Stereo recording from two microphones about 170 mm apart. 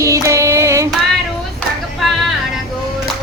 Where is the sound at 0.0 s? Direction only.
20° right (ahead or behind).